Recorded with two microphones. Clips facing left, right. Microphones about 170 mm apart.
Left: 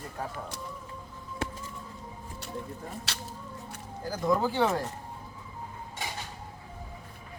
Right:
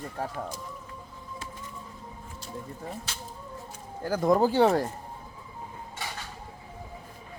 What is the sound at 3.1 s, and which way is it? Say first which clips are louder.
Speech: left 1 dB; 75° left (ahead or behind).